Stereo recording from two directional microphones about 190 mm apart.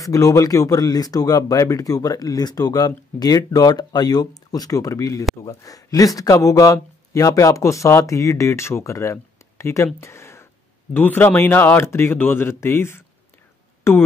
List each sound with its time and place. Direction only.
0.0 s speech: 15° left (ahead or behind)
9.9 s a sound: 15° left (ahead or behind)
10.9 s speech: 10° left (ahead or behind)